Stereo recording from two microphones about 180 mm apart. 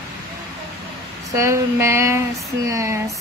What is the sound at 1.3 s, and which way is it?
A woman's voice, 15° right (ahead or behind).